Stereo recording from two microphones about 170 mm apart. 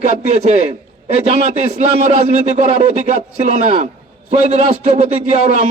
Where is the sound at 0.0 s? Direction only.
40° right (ahead or behind).